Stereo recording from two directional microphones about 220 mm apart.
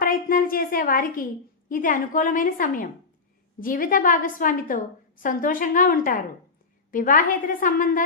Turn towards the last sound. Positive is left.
turn(degrees=40)  # may be behind; listen again after turning